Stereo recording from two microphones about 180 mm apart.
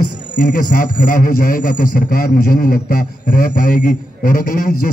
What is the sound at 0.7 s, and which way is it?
A man's voice, 50° left (ahead or behind).